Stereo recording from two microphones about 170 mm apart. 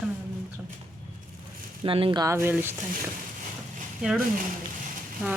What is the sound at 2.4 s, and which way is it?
Speech, 10° right (ahead or behind).